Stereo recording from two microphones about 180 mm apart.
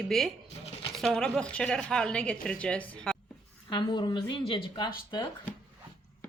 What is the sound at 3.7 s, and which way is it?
A woman's voice, 25° left (ahead or behind).